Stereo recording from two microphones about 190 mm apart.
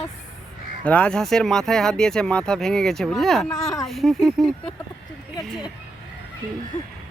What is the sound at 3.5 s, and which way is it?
Speech, 20° left (ahead or behind).